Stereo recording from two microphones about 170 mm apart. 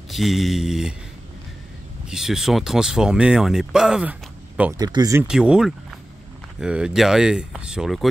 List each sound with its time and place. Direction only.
0.1 s speech: centre (ahead or behind)
2.0 s speech: 5° right (ahead or behind)
4.7 s speech: 25° right (ahead or behind)
5.2 s speech: 5° right (ahead or behind)